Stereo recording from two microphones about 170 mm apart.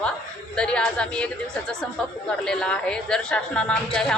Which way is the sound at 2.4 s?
5° left (ahead or behind).